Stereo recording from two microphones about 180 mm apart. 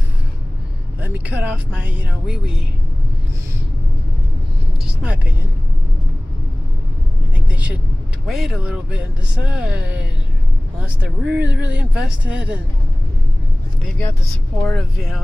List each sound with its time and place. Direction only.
1.0 s speech: 10° right (ahead or behind)
5.0 s speech: 5° right (ahead or behind)
7.3 s vehicle: 10° right (ahead or behind)
8.3 s speech: centre (ahead or behind)
14.6 s speech: 5° left (ahead or behind)